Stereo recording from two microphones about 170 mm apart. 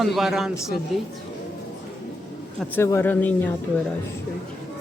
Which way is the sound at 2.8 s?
10° left (ahead or behind).